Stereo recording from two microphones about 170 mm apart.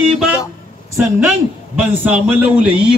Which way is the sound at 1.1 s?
5° right (ahead or behind).